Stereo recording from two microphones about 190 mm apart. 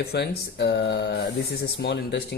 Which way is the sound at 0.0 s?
60° left (ahead or behind).